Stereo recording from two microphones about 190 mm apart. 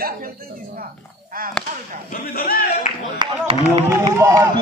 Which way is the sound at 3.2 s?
20° right (ahead or behind).